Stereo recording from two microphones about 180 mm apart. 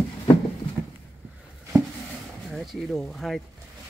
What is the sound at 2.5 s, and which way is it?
Speech, centre (ahead or behind).